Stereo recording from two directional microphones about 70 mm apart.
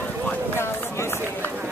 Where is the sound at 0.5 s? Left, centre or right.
Left.